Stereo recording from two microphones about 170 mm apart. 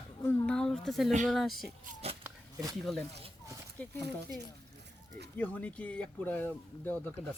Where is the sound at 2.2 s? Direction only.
20° right (ahead or behind).